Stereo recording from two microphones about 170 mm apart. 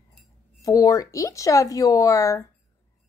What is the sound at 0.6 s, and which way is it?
Speech, 20° left (ahead or behind).